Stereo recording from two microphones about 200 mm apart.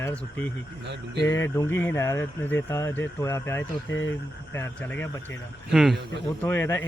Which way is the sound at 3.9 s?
70° left (ahead or behind).